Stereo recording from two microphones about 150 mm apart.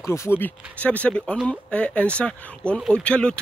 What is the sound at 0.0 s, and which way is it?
Speech, 20° left (ahead or behind).